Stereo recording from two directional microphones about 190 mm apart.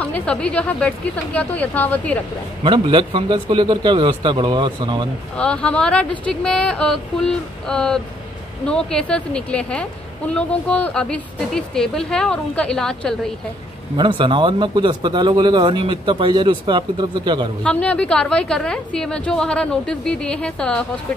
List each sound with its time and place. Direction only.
0.0 s a woman's voice: 5° left (ahead or behind)
2.6 s speech: 25° right (ahead or behind)
5.4 s a woman's voice: 5° left (ahead or behind)
13.9 s speech: 25° right (ahead or behind)
17.6 s a woman's voice: 5° left (ahead or behind)